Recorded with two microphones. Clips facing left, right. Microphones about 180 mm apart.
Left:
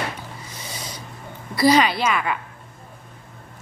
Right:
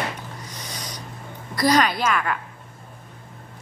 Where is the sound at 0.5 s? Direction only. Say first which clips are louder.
Even; 15° right (ahead or behind).